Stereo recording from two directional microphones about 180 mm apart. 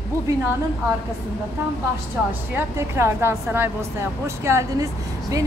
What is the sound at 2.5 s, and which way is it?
Speech, 15° right (ahead or behind).